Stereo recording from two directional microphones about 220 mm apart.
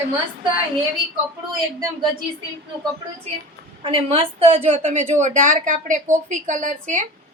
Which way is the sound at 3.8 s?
25° right (ahead or behind).